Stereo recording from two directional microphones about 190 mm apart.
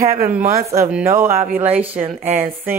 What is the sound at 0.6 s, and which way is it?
Speech, 15° right (ahead or behind).